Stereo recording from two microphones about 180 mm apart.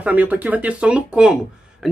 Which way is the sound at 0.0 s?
10° right (ahead or behind).